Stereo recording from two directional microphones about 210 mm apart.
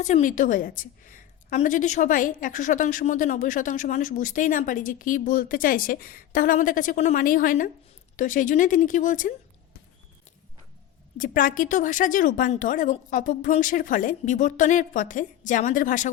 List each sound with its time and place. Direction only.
0.0 s a woman's voice: 35° left (ahead or behind)
11.2 s a woman's voice: 40° left (ahead or behind)